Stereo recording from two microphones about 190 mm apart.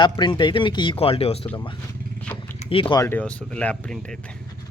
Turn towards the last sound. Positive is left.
turn(degrees=5)  # may be behind; listen again after turning